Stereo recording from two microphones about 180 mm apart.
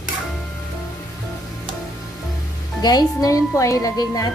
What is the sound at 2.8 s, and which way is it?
Speech, 20° left (ahead or behind).